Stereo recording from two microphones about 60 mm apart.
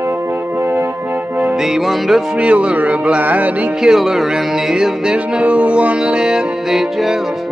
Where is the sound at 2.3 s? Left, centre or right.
Right.